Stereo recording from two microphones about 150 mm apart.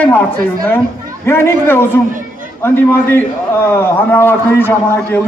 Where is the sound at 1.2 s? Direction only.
15° left (ahead or behind).